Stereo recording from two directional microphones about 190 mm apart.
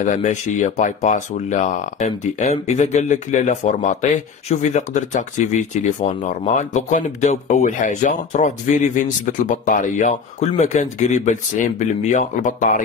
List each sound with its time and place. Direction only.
0.1 s speech: 40° left (ahead or behind)